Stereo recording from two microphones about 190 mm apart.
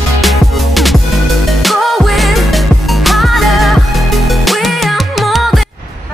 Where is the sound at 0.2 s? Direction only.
Centre (ahead or behind).